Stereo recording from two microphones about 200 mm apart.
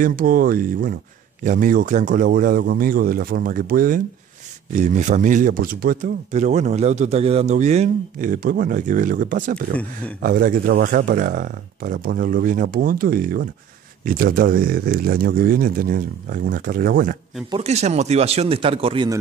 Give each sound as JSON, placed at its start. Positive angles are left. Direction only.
{"t": 0.0, "sound": "speech", "side_deg": -45}
{"t": 17.5, "sound": "speech", "side_deg": -30}